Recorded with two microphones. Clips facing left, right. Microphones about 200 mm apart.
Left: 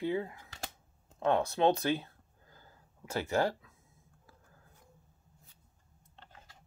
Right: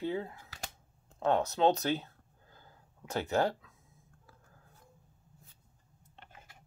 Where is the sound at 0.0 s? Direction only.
10° left (ahead or behind).